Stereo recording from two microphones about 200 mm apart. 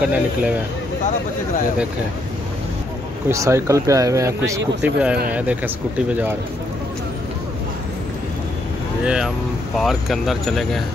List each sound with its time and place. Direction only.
0.1 s speech: 5° right (ahead or behind)
3.3 s speech: 15° right (ahead or behind)
9.0 s speech: 5° right (ahead or behind)